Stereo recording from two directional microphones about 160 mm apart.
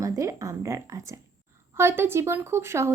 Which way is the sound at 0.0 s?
20° right (ahead or behind).